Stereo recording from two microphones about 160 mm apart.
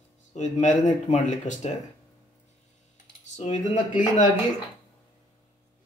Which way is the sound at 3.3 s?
50° left (ahead or behind).